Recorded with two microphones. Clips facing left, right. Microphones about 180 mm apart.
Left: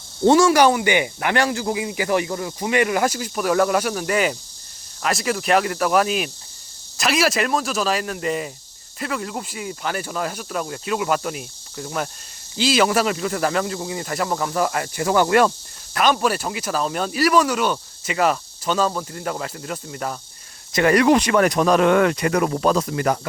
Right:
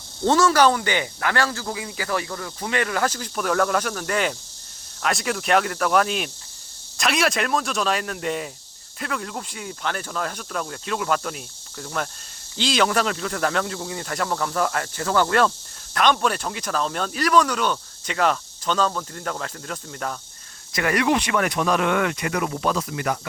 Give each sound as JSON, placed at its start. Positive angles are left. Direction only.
{"t": 0.3, "sound": "speech", "side_deg": 10}
{"t": 20.7, "sound": "speech", "side_deg": 35}